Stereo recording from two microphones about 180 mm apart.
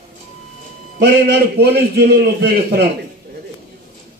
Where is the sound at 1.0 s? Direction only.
65° right (ahead or behind).